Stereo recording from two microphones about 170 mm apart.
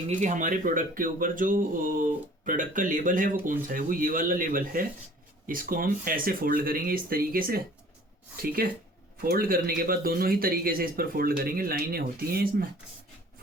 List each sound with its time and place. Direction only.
0.2 s speech: 50° right (ahead or behind)